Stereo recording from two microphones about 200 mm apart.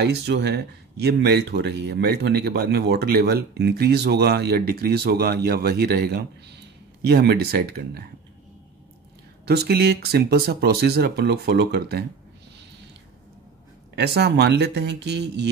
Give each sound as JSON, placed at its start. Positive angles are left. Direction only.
{"t": 0.0, "sound": "speech", "side_deg": -55}
{"t": 9.5, "sound": "speech", "side_deg": -50}
{"t": 13.9, "sound": "speech", "side_deg": -55}